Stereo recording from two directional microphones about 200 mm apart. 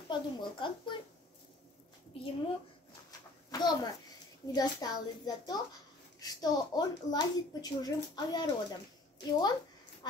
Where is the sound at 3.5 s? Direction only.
20° left (ahead or behind).